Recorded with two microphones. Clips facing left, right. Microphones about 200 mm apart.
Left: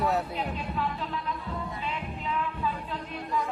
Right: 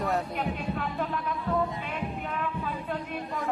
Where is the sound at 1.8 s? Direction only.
55° right (ahead or behind).